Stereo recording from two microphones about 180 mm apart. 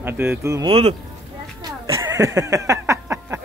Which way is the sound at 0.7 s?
30° right (ahead or behind).